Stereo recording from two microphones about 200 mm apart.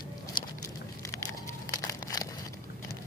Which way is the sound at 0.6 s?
15° left (ahead or behind).